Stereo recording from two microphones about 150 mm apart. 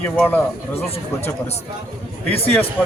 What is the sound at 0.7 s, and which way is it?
Speech, 40° left (ahead or behind).